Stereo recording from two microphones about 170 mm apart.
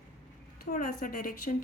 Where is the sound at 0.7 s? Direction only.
55° left (ahead or behind).